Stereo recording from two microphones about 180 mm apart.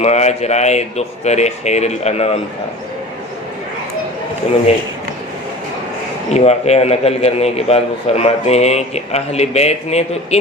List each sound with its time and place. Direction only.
0.0 s a man's voice: 40° left (ahead or behind)
6.2 s a man's voice: 35° left (ahead or behind)